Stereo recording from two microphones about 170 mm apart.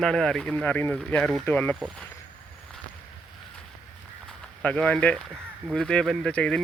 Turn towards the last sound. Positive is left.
turn(degrees=5)  # may be behind; listen again after turning